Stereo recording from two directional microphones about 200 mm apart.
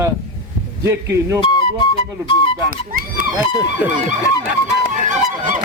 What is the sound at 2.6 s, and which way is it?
Speech, 45° right (ahead or behind).